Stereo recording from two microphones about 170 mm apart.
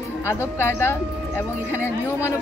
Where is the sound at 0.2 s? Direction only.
15° left (ahead or behind).